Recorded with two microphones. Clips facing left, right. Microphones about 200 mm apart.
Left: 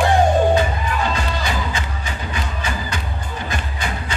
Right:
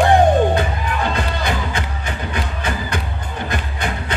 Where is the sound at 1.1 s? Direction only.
55° right (ahead or behind).